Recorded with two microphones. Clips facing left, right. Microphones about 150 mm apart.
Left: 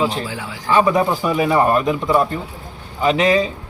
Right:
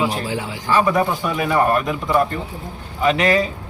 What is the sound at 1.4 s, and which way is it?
Speech, 25° left (ahead or behind).